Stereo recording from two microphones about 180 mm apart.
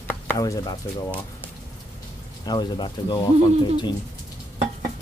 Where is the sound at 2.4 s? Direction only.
25° left (ahead or behind).